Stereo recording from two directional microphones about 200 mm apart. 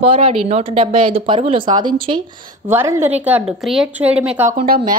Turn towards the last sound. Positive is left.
turn(degrees=-45)  # may be behind; listen again after turning